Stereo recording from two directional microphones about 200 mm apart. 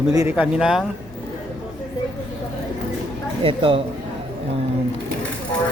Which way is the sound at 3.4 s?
25° right (ahead or behind).